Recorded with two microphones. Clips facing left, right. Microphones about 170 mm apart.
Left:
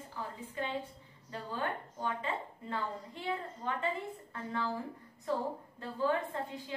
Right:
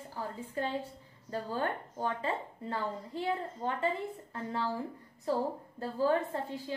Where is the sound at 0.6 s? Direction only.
40° right (ahead or behind).